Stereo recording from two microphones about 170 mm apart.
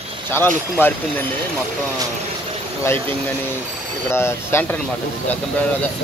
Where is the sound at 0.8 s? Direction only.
10° left (ahead or behind).